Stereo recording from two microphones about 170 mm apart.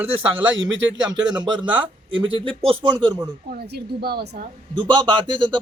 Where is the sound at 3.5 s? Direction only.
65° right (ahead or behind).